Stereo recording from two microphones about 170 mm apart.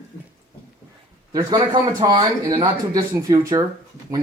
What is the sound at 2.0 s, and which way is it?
Speech, 20° right (ahead or behind).